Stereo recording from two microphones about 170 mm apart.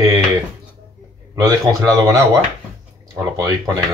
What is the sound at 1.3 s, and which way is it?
Speech, 20° right (ahead or behind).